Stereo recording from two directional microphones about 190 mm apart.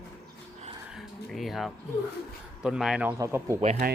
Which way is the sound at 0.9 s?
Centre (ahead or behind).